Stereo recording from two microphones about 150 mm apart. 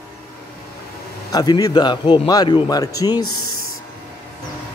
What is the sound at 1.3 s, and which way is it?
A man's voice, 25° left (ahead or behind).